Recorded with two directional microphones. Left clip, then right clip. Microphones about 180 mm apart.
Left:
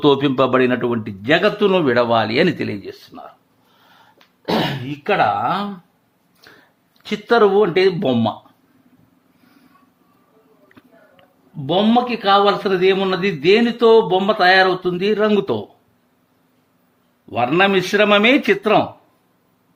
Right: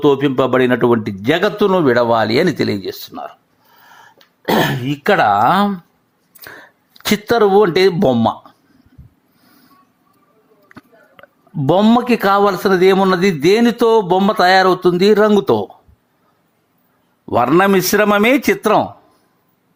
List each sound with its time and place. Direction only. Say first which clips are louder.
0.0 s speech: right 1 dB; 5° right (ahead or behind); by 3.2 s 30° right (ahead or behind)
4.2 s speech: right 5 dB; 55° right (ahead or behind)
6.9 s a sound: right 9 dB; 60° right (ahead or behind)
7.3 s speech: right 2 dB; 30° right (ahead or behind)
11.2 s a sound: right 9 dB; 35° right (ahead or behind)
11.6 s a man's voice: right 3 dB; 40° right (ahead or behind)
17.2 s a man's voice: right 4 dB; 35° right (ahead or behind)